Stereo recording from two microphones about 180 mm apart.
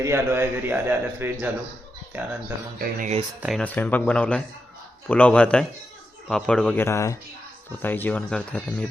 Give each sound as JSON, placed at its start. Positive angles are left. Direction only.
{"t": 0.0, "sound": "speech", "side_deg": -15}
{"t": 2.7, "sound": "speech", "side_deg": -45}
{"t": 3.4, "sound": "speech", "side_deg": 0}